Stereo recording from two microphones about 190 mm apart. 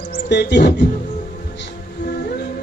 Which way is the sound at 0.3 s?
65° left (ahead or behind).